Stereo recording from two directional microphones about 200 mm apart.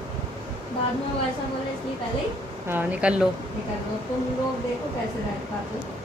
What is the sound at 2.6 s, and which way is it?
Speech, 10° right (ahead or behind).